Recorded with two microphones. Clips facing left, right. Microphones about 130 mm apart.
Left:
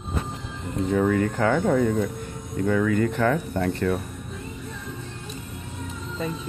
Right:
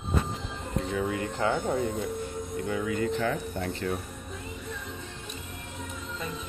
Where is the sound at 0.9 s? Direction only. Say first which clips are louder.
Left 10 dB; 50° left (ahead or behind).